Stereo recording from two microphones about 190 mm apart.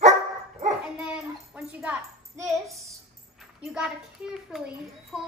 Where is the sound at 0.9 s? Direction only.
5° right (ahead or behind).